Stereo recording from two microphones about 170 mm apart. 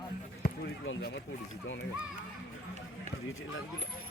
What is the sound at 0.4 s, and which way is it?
Run, 70° left (ahead or behind).